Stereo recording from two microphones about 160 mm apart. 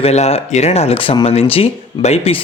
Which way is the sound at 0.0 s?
40° left (ahead or behind).